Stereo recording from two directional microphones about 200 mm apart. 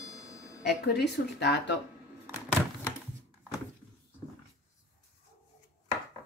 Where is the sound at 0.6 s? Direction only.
55° left (ahead or behind).